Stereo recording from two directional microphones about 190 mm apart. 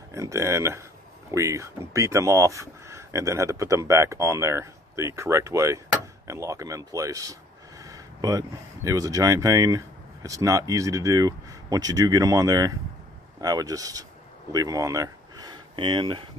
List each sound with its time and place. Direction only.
0.1 s speech: 15° right (ahead or behind)